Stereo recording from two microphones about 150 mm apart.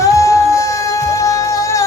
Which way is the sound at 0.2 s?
20° left (ahead or behind).